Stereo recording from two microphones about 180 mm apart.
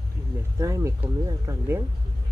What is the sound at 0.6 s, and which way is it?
Speech, 15° right (ahead or behind).